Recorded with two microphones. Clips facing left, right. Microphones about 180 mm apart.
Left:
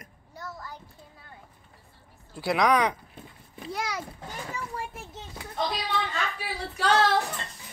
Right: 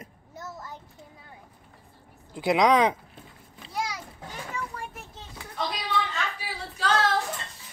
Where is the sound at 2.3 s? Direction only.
20° right (ahead or behind).